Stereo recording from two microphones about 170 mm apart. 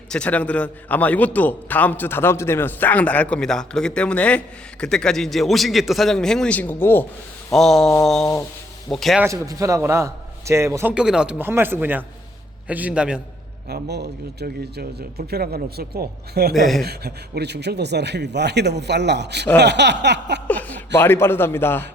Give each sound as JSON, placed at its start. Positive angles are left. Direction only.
{"t": 0.1, "sound": "a man's voice", "side_deg": 5}
{"t": 7.5, "sound": "mantra", "side_deg": 0}
{"t": 9.2, "sound": "a man's voice", "side_deg": -20}
{"t": 13.7, "sound": "speech", "side_deg": -75}
{"t": 19.5, "sound": "a sound", "side_deg": -90}
{"t": 20.5, "sound": "a man's voice", "side_deg": 10}